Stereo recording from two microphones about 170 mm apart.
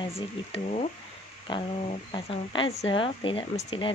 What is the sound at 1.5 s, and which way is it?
Speech, 30° left (ahead or behind).